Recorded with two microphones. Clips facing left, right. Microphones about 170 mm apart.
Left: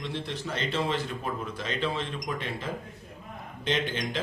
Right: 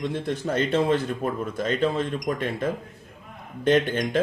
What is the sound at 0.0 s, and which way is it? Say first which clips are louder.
Speech: right 7 dB; 50° right (ahead or behind).